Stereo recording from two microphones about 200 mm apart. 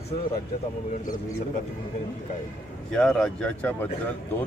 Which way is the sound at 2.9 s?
5° left (ahead or behind).